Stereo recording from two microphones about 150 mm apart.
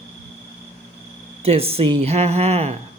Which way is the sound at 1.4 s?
40° right (ahead or behind).